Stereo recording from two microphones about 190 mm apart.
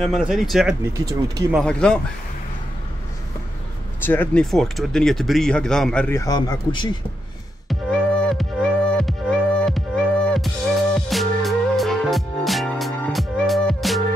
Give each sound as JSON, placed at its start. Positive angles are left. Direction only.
{"t": 0.0, "sound": "speech", "side_deg": 0}
{"t": 0.9, "sound": "speech", "side_deg": -20}
{"t": 1.6, "sound": "speech", "side_deg": 5}
{"t": 4.0, "sound": "speech", "side_deg": 10}
{"t": 7.6, "sound": "music", "side_deg": 5}